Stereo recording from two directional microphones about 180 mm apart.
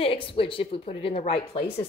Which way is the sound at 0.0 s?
30° left (ahead or behind).